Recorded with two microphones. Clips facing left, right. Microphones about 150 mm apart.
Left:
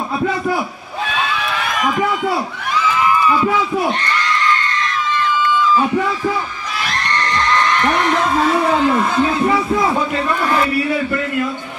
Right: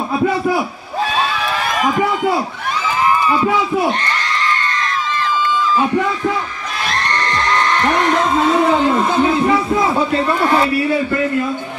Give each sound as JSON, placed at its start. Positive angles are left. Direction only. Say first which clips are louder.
{"t": 1.8, "sound": "a man's voice", "louder": "right 2 dB", "side_deg": -35}
{"t": 7.8, "sound": "speech", "louder": "right 1 dB", "side_deg": -25}